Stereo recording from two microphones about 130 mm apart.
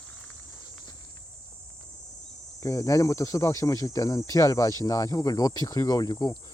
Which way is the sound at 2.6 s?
25° left (ahead or behind).